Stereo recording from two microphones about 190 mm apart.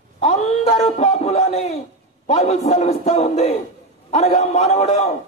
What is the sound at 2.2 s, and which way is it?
A man's voice, 35° left (ahead or behind).